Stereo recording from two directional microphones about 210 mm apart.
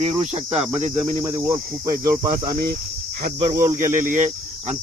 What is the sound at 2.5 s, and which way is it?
Speech, 45° right (ahead or behind).